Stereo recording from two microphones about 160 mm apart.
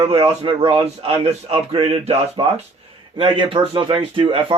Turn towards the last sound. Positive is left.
turn(degrees=-35)  # may be behind; listen again after turning